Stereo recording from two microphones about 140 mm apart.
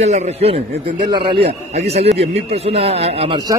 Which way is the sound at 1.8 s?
50° right (ahead or behind).